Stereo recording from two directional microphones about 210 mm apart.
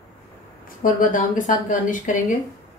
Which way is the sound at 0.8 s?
40° left (ahead or behind).